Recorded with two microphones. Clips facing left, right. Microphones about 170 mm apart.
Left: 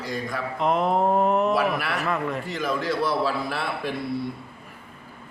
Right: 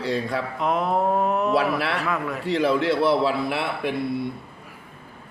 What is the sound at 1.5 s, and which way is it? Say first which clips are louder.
A man's voice: right 2 dB; 30° right (ahead or behind).